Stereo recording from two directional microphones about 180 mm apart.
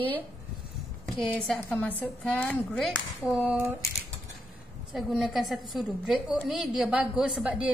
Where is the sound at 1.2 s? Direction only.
5° left (ahead or behind).